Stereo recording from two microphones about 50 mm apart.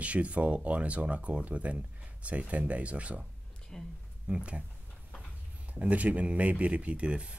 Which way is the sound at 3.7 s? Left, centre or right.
Centre.